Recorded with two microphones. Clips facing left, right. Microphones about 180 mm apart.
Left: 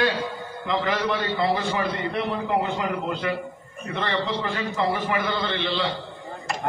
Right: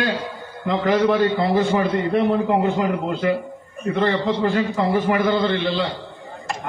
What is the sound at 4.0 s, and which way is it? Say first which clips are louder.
A man's voice: right 6 dB; 40° right (ahead or behind).